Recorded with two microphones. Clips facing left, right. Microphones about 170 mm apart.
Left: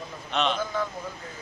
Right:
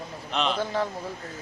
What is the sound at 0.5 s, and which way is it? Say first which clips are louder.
Speech: right 2 dB; 35° right (ahead or behind).